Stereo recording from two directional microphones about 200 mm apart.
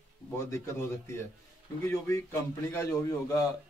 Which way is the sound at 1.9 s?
10° left (ahead or behind).